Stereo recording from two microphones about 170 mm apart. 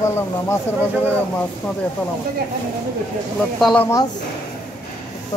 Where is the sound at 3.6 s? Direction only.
5° left (ahead or behind).